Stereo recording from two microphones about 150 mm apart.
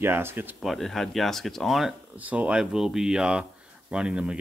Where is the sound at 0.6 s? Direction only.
Centre (ahead or behind).